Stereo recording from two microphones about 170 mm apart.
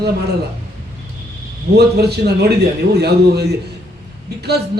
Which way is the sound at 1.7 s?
75° right (ahead or behind).